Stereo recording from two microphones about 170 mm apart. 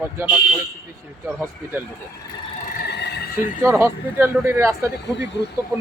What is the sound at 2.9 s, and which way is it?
Neigh, 80° left.